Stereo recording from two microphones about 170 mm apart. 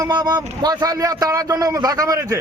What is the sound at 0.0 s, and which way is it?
Speech, 25° right (ahead or behind).